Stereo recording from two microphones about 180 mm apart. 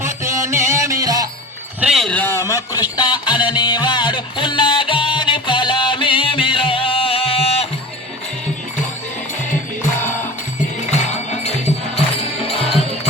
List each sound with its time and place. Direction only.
0.0 s music: 15° right (ahead or behind)
1.8 s music: centre (ahead or behind); by 7.7 s 35° left (ahead or behind)
11.0 s music: 40° left (ahead or behind)
12.5 s music: centre (ahead or behind)